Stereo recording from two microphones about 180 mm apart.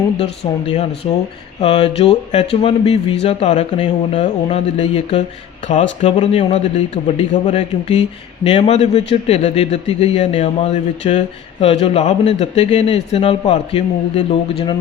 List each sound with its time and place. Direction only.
0.2 s speech: 35° left (ahead or behind)